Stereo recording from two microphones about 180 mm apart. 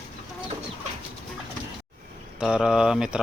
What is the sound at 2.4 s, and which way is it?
Speech, centre (ahead or behind).